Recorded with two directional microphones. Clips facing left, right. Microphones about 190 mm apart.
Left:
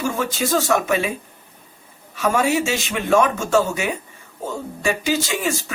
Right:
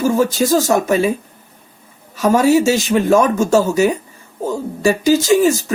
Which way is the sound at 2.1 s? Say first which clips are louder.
Right 7 dB; 40° right (ahead or behind).